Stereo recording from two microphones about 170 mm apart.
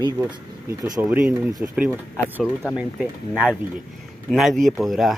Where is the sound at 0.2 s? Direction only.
20° right (ahead or behind).